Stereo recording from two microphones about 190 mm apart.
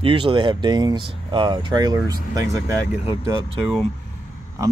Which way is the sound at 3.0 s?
30° left (ahead or behind).